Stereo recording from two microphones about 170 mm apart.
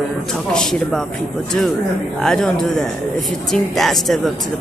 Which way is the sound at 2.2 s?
5° left (ahead or behind).